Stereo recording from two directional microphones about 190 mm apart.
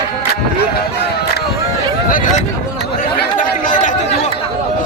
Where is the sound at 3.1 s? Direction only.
45° left (ahead or behind).